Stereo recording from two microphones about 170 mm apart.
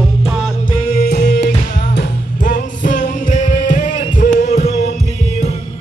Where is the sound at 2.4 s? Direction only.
50° left (ahead or behind).